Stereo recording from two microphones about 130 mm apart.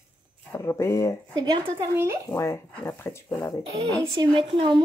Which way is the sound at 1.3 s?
30° right (ahead or behind).